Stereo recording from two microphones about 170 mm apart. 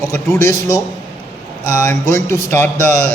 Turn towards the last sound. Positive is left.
turn(degrees=10)  # may be behind; listen again after turning